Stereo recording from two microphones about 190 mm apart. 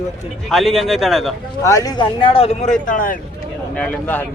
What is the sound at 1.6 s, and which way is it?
Speech, 20° left (ahead or behind).